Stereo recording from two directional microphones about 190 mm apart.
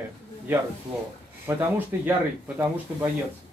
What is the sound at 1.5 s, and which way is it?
Speech, 15° right (ahead or behind).